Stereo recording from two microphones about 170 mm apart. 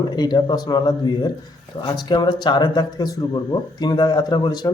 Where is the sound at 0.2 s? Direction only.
25° left (ahead or behind).